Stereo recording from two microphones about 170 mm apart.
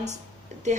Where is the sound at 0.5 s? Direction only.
45° right (ahead or behind).